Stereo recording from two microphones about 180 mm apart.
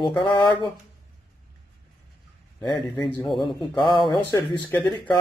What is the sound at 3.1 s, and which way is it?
Speech, centre (ahead or behind).